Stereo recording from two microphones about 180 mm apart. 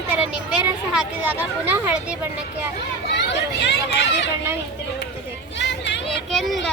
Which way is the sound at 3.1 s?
75° left (ahead or behind).